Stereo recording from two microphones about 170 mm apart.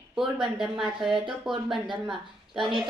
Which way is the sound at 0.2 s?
Centre (ahead or behind).